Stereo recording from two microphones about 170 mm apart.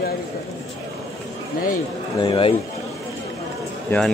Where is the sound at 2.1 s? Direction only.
30° left (ahead or behind).